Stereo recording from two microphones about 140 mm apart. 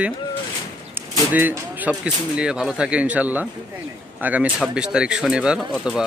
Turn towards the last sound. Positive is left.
turn(degrees=-5)  # may be behind; listen again after turning